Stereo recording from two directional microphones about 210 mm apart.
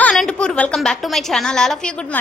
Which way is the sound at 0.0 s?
5° left (ahead or behind).